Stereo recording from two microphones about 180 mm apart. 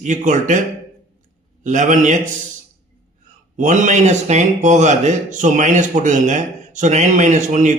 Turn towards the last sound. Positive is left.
turn(degrees=-40)  # may be behind; listen again after turning